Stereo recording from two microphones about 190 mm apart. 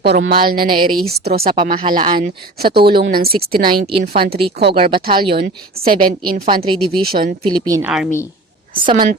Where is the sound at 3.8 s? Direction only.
30° right (ahead or behind).